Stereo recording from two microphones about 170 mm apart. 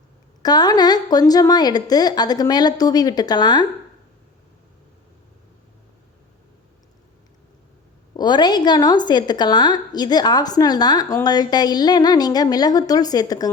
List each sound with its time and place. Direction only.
0.4 s a woman's voice: 25° left (ahead or behind)
8.1 s a woman's voice: 25° left (ahead or behind)